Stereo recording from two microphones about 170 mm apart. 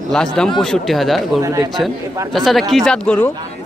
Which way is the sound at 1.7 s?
Centre (ahead or behind).